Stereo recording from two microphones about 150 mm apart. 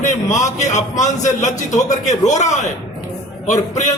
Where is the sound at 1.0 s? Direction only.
50° left (ahead or behind).